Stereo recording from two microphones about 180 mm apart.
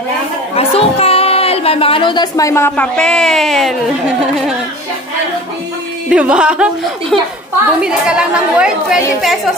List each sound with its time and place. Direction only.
0.6 s a woman's voice: 35° left (ahead or behind); by 3.7 s centre (ahead or behind)
6.0 s speech: 5° right (ahead or behind)